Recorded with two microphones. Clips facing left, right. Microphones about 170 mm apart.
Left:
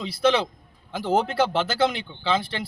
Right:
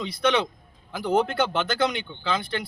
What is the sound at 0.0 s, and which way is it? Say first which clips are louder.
Speech: left 2 dB; 30° left (ahead or behind).